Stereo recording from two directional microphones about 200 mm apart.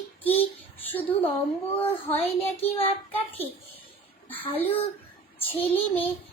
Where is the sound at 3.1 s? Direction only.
10° left (ahead or behind).